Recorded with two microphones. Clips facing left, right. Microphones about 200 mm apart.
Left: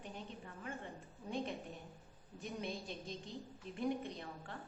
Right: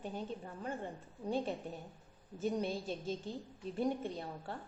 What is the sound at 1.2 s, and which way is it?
A woman's voice, 35° right (ahead or behind).